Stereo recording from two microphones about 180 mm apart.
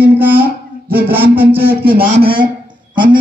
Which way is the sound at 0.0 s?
10° right (ahead or behind).